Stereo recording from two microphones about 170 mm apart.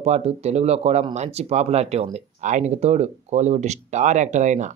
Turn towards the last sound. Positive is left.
turn(degrees=-45)  # may be behind; listen again after turning